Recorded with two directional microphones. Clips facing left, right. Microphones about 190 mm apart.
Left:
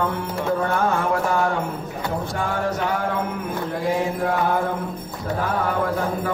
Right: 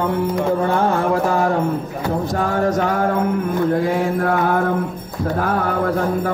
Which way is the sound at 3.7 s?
50° right (ahead or behind).